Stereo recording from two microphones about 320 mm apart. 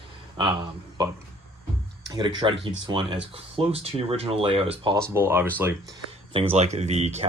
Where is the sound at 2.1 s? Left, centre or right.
Centre.